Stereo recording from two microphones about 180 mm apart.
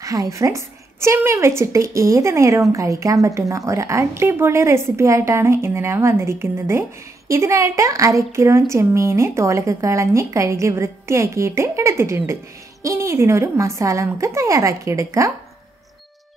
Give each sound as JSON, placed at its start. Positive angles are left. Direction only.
{"t": 0.0, "sound": "a woman's voice", "side_deg": -20}